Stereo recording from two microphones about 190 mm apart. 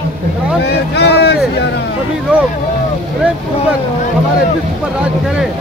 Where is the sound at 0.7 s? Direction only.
60° left (ahead or behind).